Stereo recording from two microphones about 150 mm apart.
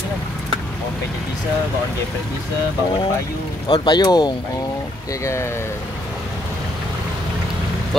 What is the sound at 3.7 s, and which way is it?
Speech, 25° left (ahead or behind).